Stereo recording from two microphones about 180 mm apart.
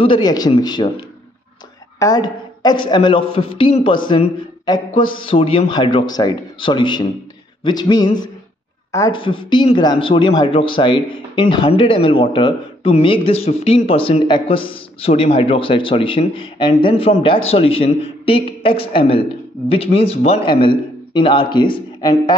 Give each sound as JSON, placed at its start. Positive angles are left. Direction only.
{"t": 0.0, "sound": "speech", "side_deg": 25}